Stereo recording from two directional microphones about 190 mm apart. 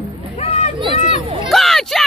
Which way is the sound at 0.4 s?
35° left (ahead or behind).